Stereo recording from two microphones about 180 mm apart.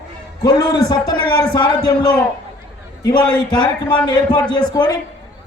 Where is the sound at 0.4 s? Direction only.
20° left (ahead or behind).